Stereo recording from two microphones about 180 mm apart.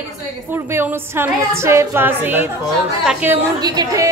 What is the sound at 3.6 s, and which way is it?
Speech, 20° right (ahead or behind).